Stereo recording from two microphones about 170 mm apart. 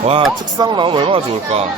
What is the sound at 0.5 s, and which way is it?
Speech, 30° right (ahead or behind).